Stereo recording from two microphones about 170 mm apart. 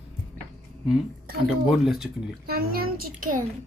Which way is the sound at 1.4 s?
Centre (ahead or behind).